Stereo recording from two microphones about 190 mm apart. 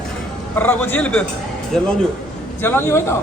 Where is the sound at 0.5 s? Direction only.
10° left (ahead or behind).